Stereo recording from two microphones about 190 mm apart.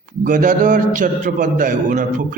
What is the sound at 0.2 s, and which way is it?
A man's voice, 45° right (ahead or behind).